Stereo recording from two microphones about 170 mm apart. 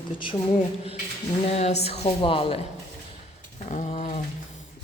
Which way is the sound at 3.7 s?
45° left (ahead or behind).